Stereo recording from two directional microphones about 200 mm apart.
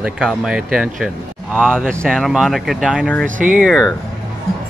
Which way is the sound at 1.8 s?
5° left (ahead or behind).